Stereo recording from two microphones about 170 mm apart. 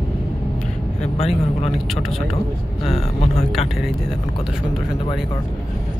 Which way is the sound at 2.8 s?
35° left (ahead or behind).